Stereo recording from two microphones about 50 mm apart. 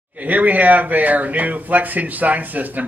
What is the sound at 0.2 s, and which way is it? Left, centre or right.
Speech, right.